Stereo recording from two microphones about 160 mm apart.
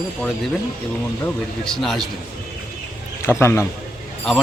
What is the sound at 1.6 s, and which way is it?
Speech, centre (ahead or behind).